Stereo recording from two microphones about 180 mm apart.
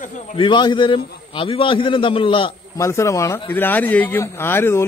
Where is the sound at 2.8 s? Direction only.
15° left (ahead or behind).